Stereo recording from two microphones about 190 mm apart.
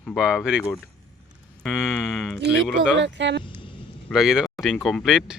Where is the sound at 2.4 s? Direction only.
65° right (ahead or behind).